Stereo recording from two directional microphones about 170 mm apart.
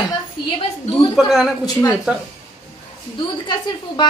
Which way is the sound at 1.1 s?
Centre (ahead or behind).